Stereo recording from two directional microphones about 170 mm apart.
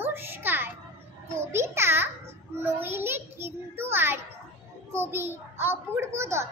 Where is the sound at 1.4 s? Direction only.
15° right (ahead or behind).